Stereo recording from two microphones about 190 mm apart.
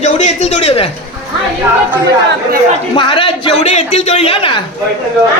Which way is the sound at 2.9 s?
25° left (ahead or behind).